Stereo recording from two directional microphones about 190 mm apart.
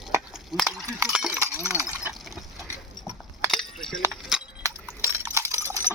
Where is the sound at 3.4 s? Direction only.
Centre (ahead or behind).